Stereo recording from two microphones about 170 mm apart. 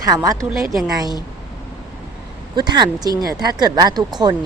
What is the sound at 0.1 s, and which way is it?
Speech, 20° right (ahead or behind).